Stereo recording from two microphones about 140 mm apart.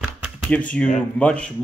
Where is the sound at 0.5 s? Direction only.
10° left (ahead or behind).